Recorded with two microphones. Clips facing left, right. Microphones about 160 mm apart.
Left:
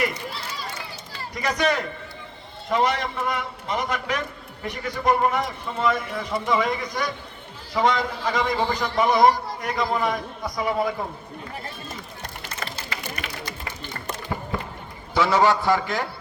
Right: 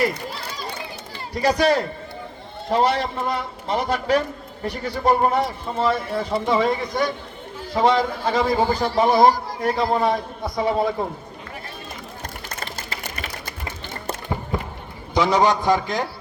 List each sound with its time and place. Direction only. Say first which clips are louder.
1.3 s a man's voice: right 5 dB; 30° right (ahead or behind)
14.5 s run: right 3 dB; 15° right (ahead or behind)
15.1 s a man's voice: right 1 dB; 15° right (ahead or behind)